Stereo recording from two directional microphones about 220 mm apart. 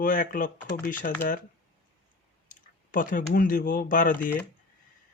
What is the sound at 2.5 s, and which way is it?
Speech, 40° left (ahead or behind).